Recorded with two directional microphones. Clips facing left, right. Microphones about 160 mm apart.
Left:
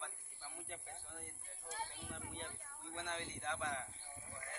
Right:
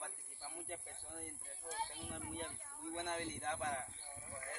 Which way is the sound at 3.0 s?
45° right (ahead or behind).